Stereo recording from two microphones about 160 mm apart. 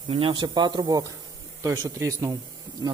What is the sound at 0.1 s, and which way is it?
Speech, 35° right (ahead or behind).